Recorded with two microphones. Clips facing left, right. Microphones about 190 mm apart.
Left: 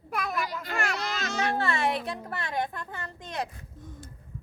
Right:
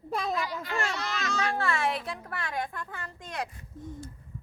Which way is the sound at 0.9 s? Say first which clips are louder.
Left 1 dB; 35° left (ahead or behind).